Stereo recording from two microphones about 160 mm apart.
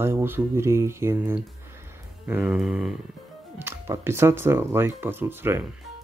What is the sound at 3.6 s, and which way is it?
Speech, 15° right (ahead or behind).